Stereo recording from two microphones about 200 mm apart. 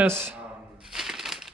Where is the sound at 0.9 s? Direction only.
Centre (ahead or behind).